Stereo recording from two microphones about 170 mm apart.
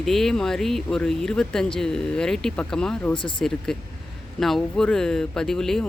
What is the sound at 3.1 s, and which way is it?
Speech, 30° left (ahead or behind).